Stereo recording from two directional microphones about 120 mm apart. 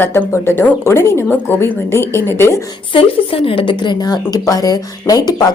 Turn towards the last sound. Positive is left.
turn(degrees=30)  # may be behind; listen again after turning